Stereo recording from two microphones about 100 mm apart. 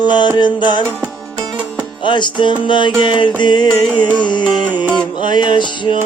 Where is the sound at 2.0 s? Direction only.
50° left (ahead or behind).